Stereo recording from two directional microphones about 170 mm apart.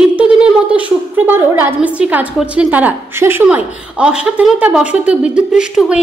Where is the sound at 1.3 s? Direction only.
10° right (ahead or behind).